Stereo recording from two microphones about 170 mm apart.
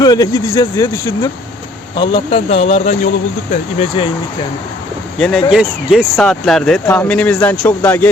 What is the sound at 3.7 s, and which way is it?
Speech, 30° left (ahead or behind).